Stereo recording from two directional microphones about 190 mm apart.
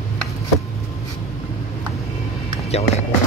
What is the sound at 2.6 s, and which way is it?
Speech, 35° left (ahead or behind).